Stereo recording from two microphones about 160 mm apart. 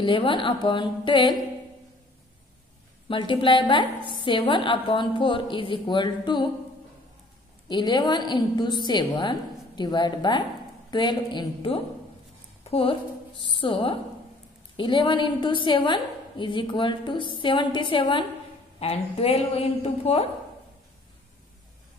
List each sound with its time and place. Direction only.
0.0 s a woman's voice: 30° left (ahead or behind)
3.1 s a woman's voice: 30° left (ahead or behind)
7.6 s a woman's voice: 30° left (ahead or behind)
12.6 s a sound: 35° left (ahead or behind)
13.6 s a woman's voice: 30° left (ahead or behind)